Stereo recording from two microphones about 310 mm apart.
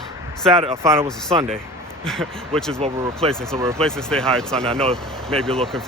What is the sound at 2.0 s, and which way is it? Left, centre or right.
Speech, centre.